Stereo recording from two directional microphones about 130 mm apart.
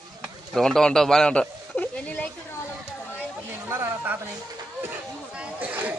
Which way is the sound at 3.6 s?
20° right (ahead or behind).